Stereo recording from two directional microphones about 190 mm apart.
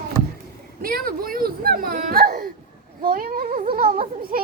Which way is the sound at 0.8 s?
50° right (ahead or behind).